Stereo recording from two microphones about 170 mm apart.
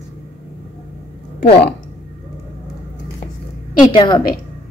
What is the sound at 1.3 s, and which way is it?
Speech, 65° left (ahead or behind).